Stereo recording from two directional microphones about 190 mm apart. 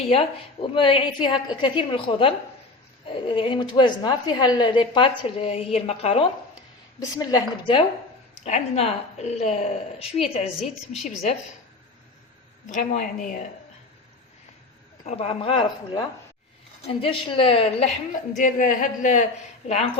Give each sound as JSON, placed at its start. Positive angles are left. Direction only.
{"t": 0.0, "sound": "a woman's voice", "side_deg": 30}
{"t": 7.2, "sound": "a woman's voice", "side_deg": 20}
{"t": 8.4, "sound": "a woman's voice", "side_deg": 35}
{"t": 12.6, "sound": "a woman's voice", "side_deg": 40}
{"t": 15.0, "sound": "a woman's voice", "side_deg": 30}